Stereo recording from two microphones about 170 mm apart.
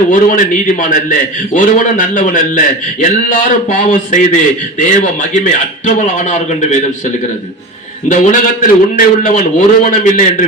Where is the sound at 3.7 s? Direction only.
50° left (ahead or behind).